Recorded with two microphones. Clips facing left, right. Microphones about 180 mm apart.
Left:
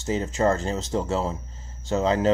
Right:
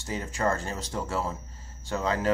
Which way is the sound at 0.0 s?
20° left (ahead or behind).